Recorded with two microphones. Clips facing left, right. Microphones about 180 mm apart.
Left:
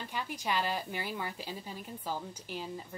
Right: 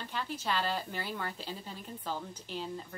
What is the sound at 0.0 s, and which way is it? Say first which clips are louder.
Speech: even; 10° left (ahead or behind).